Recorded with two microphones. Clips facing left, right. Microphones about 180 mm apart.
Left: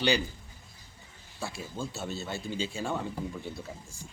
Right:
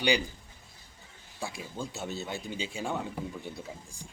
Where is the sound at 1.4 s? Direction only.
15° right (ahead or behind).